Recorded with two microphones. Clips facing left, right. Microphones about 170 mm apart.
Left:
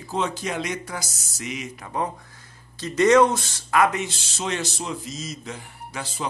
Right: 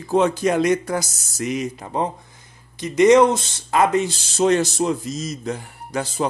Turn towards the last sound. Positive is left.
turn(degrees=-45)  # may be behind; listen again after turning